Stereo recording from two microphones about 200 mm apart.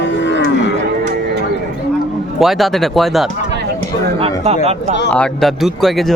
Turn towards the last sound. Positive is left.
turn(degrees=0)  # may be behind; listen again after turning